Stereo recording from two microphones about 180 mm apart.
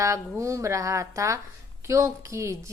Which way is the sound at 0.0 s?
15° right (ahead or behind).